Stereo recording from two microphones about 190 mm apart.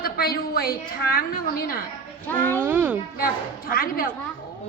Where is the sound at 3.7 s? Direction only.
50° left (ahead or behind).